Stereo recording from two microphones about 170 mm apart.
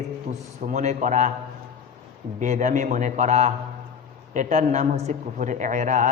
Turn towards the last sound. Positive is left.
turn(degrees=-45)  # may be behind; listen again after turning